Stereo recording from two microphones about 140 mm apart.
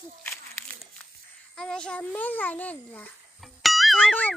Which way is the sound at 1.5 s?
5° left (ahead or behind).